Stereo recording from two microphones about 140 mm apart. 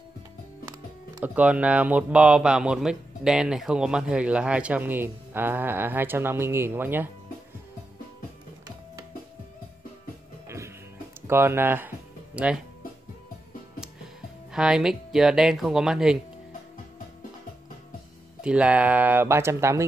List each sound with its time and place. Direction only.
1.2 s speech: 10° right (ahead or behind)
11.2 s speech: 15° right (ahead or behind)
14.5 s speech: 5° right (ahead or behind)
18.4 s speech: 10° right (ahead or behind)